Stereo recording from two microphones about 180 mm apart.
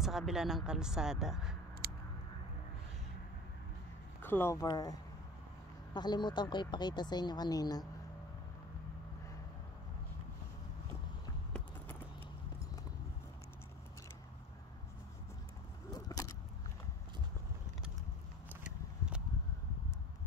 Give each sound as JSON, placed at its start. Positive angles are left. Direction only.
{"t": 0.0, "sound": "speech", "side_deg": 0}
{"t": 1.8, "sound": "a sound", "side_deg": -60}
{"t": 4.2, "sound": "speech", "side_deg": 10}
{"t": 5.9, "sound": "speech", "side_deg": 25}
{"t": 15.9, "sound": "vehicle", "side_deg": 20}
{"t": 18.5, "sound": "a sound", "side_deg": -5}